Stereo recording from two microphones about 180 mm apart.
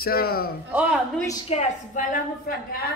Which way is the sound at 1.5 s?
35° left (ahead or behind).